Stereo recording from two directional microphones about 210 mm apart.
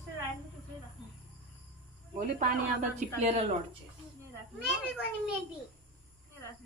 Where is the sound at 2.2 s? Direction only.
35° right (ahead or behind).